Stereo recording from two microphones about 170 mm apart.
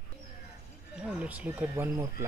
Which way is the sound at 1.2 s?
10° right (ahead or behind).